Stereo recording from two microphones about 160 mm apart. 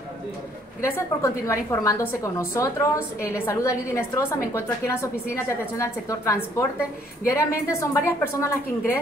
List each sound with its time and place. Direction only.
0.8 s a woman's voice: 15° left (ahead or behind)